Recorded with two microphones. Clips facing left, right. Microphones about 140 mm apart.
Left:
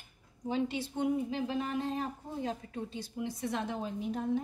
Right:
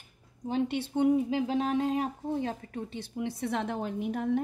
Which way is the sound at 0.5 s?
60° right (ahead or behind).